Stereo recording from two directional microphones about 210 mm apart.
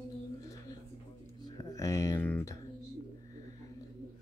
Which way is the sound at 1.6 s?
15° left (ahead or behind).